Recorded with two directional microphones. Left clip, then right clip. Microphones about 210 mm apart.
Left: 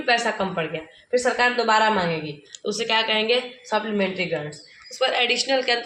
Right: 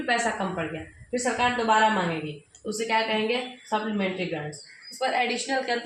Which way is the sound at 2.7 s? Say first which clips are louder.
Left 3 dB; 25° left (ahead or behind).